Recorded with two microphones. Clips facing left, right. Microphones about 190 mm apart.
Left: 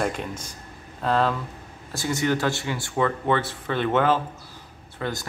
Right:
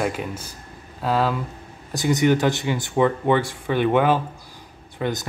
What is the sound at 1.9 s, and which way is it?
Speech, 20° right (ahead or behind).